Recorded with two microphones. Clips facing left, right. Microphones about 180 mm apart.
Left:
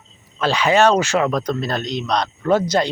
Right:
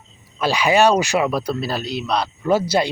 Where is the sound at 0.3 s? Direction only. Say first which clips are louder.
Even; 10° right (ahead or behind).